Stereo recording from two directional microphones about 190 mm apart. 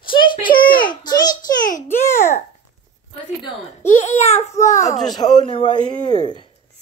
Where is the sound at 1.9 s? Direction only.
10° left (ahead or behind).